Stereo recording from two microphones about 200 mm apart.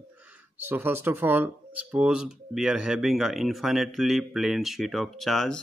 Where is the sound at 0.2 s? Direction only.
10° right (ahead or behind).